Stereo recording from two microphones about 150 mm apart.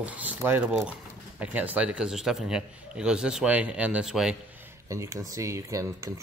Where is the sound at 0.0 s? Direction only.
10° right (ahead or behind).